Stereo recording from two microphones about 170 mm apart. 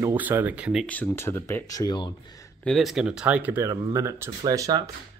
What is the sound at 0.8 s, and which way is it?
Speech, 10° left (ahead or behind).